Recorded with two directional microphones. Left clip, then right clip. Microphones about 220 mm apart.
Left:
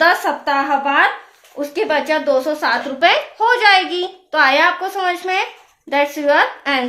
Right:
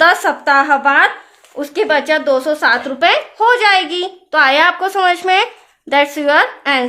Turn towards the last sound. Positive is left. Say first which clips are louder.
# right 2 dB
turn(degrees=-30)  # may be behind; listen again after turning